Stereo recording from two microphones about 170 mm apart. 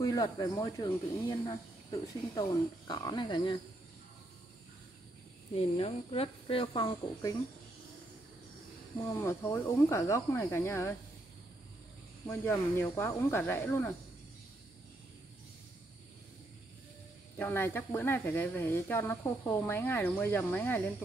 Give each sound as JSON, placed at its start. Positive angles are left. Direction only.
{"t": 0.0, "sound": "speech", "side_deg": 20}
{"t": 5.5, "sound": "speech", "side_deg": 35}
{"t": 9.1, "sound": "speech", "side_deg": 15}
{"t": 12.3, "sound": "speech", "side_deg": 15}
{"t": 17.4, "sound": "speech", "side_deg": 10}